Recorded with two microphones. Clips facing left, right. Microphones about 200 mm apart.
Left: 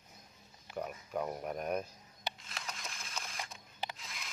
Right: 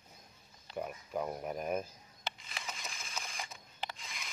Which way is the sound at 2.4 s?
Centre (ahead or behind).